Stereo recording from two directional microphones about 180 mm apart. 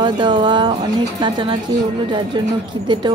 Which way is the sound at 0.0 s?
25° right (ahead or behind).